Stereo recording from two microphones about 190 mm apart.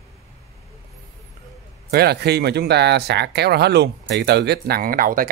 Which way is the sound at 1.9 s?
55° right (ahead or behind).